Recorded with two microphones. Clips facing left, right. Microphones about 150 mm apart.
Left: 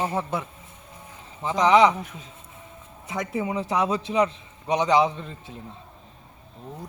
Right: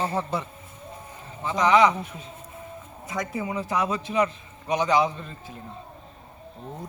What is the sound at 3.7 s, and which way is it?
A man's voice, 25° left (ahead or behind).